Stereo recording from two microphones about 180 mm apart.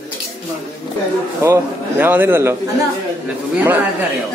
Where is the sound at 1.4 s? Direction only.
10° right (ahead or behind).